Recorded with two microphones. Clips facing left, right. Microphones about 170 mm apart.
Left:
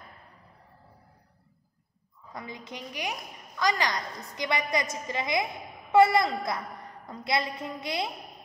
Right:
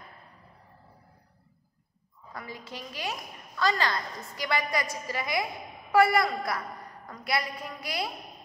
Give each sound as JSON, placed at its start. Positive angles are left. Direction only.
{"t": 2.3, "sound": "a woman's voice", "side_deg": 20}